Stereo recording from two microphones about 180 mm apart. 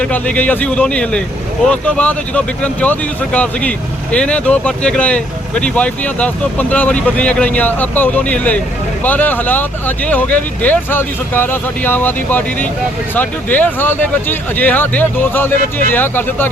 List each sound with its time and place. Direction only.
0.0 s speech: 10° left (ahead or behind)